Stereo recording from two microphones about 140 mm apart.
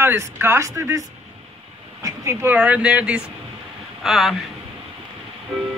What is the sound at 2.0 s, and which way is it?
Speech, 20° right (ahead or behind).